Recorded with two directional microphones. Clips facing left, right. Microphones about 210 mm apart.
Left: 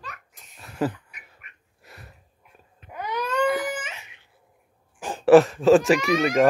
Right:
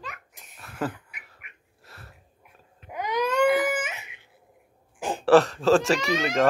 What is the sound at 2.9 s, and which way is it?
Baby cry, 15° right (ahead or behind).